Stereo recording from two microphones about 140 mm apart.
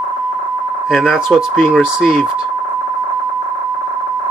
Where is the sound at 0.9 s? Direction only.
Centre (ahead or behind).